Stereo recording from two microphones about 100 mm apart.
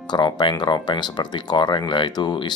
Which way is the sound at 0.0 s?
50° left (ahead or behind).